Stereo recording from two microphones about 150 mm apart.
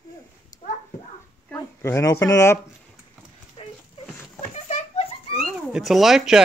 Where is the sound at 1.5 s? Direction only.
15° left (ahead or behind).